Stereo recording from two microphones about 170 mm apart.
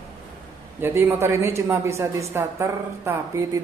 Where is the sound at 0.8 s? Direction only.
10° right (ahead or behind).